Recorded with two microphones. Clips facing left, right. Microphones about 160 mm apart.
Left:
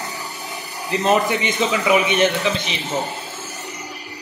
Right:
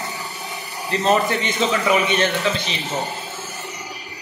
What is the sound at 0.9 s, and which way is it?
Speech, 15° left (ahead or behind).